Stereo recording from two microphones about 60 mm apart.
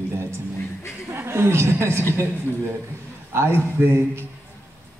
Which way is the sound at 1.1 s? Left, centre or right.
Right.